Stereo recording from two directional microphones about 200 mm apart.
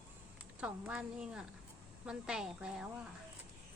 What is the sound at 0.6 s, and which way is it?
A woman's voice, 5° right (ahead or behind).